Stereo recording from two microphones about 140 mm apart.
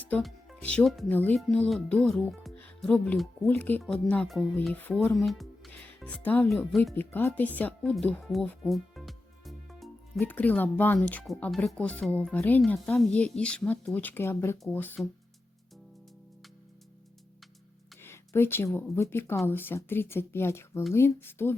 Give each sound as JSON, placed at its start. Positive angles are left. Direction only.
{"t": 0.0, "sound": "speech", "side_deg": 10}
{"t": 8.6, "sound": "music", "side_deg": 0}
{"t": 10.2, "sound": "speech", "side_deg": 10}
{"t": 18.0, "sound": "speech", "side_deg": 15}